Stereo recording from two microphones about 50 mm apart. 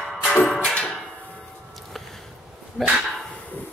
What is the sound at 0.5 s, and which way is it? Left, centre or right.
Music, left.